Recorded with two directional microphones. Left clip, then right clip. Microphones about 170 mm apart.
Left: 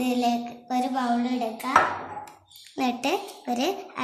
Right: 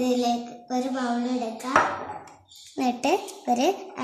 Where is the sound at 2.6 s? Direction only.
Centre (ahead or behind).